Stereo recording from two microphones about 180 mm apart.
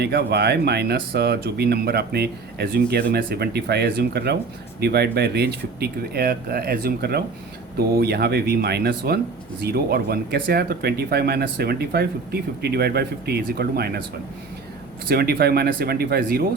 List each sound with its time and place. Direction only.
0.0 s speech: 65° right (ahead or behind)
15.1 s speech: 60° right (ahead or behind)